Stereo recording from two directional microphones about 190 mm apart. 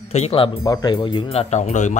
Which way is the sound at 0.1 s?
30° left (ahead or behind).